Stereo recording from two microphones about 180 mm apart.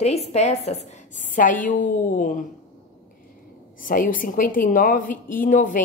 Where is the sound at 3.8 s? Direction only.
50° left (ahead or behind).